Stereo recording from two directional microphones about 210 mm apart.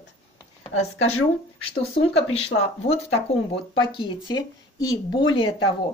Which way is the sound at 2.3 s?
30° left (ahead or behind).